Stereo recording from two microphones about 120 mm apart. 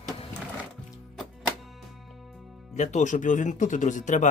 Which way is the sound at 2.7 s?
75° left (ahead or behind).